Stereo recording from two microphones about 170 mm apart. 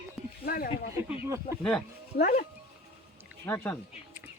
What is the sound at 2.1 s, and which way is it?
Speech, 65° left (ahead or behind).